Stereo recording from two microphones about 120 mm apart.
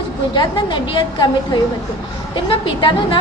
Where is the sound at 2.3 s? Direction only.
40° left (ahead or behind).